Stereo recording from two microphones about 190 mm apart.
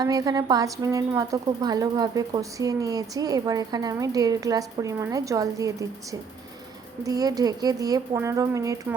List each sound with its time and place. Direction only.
0.0 s speech: 20° right (ahead or behind)
7.0 s speech: 20° right (ahead or behind)